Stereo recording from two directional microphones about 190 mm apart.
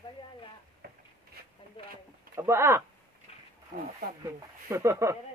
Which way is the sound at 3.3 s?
30° left (ahead or behind).